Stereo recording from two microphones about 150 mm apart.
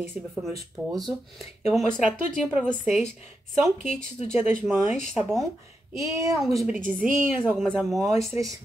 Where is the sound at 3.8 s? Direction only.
50° left (ahead or behind).